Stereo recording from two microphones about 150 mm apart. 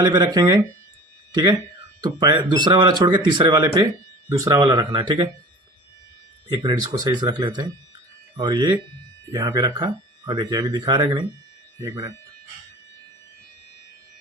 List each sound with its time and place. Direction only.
0.0 s speech: 25° right (ahead or behind)
6.5 s speech: 25° right (ahead or behind)